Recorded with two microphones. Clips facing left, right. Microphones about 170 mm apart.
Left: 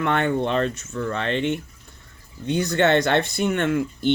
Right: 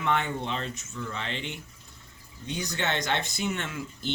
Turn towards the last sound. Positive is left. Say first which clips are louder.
# left 13 dB
turn(degrees=55)  # may be behind; listen again after turning